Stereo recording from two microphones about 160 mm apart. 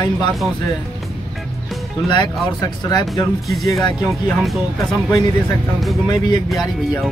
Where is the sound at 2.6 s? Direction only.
25° left (ahead or behind).